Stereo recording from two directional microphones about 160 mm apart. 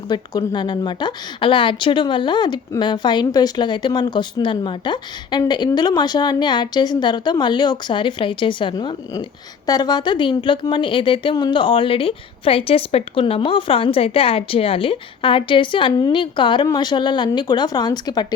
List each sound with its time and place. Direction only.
0.1 s a woman's voice: 25° left (ahead or behind)